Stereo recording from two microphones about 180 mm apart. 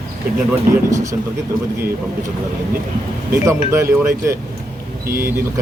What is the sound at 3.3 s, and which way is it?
Speech, 15° right (ahead or behind).